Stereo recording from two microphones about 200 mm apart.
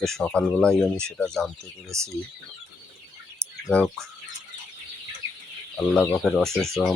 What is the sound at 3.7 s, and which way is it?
Speech, centre (ahead or behind).